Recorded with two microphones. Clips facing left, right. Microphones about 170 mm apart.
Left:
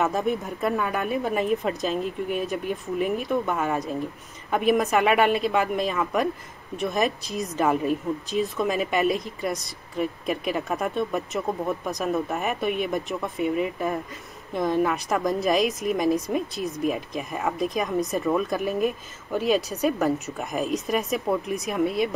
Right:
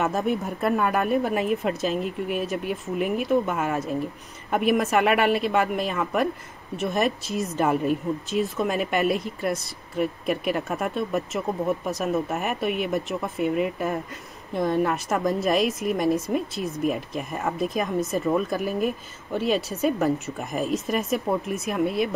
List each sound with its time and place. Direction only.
0.0 s speech: centre (ahead or behind)
0.7 s speech: 55° right (ahead or behind)
1.0 s speech: centre (ahead or behind)
15.0 s speech: centre (ahead or behind)